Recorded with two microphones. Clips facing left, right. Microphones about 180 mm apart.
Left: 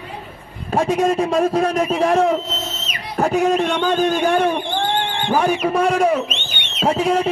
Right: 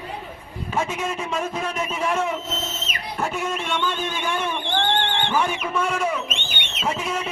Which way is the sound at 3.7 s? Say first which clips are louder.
Left 8 dB; 40° left (ahead or behind).